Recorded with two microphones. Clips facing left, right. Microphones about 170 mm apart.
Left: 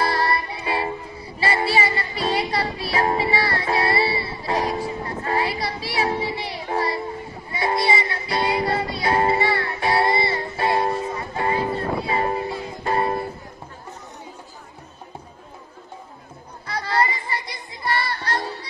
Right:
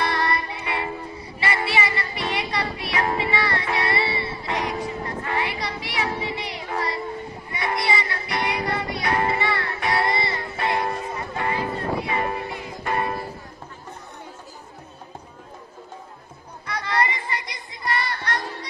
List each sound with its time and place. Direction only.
0.0 s music: 30° left (ahead or behind)
16.6 s music: 30° left (ahead or behind)